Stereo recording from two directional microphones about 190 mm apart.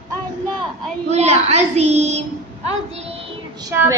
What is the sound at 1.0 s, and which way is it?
A child's voice, 35° right (ahead or behind).